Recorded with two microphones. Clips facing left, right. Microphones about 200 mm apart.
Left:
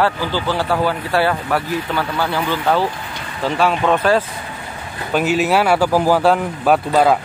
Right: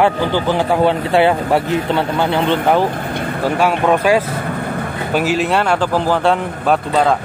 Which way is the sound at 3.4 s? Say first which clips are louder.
Right 1 dB; 10° right (ahead or behind).